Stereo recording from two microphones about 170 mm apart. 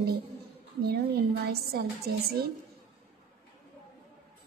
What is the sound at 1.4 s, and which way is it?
Speech, 65° right (ahead or behind).